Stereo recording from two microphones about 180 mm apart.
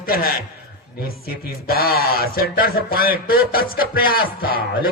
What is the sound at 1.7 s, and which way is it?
A man's voice, 60° left (ahead or behind).